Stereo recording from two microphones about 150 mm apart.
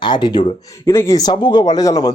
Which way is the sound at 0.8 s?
15° left (ahead or behind).